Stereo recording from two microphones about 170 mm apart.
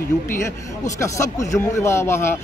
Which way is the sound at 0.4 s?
15° left (ahead or behind).